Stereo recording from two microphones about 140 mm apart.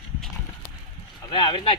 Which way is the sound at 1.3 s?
35° left (ahead or behind).